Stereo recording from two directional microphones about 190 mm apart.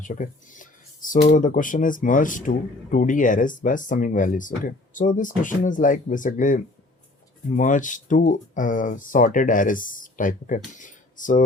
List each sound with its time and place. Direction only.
0.0 s speech: 45° left (ahead or behind)